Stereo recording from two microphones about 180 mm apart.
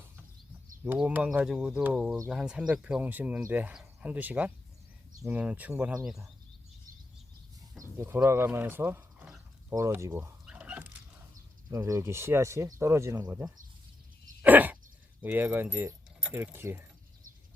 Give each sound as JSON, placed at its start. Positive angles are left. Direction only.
{"t": 0.9, "sound": "speech", "side_deg": -10}
{"t": 7.8, "sound": "speech", "side_deg": -15}
{"t": 9.6, "sound": "power windows", "side_deg": -15}
{"t": 11.7, "sound": "speech", "side_deg": -15}
{"t": 14.4, "sound": "a sound", "side_deg": -10}
{"t": 15.2, "sound": "speech", "side_deg": -10}